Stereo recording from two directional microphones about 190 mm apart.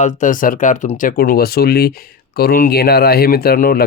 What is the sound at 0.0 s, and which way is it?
Speech, 40° left (ahead or behind).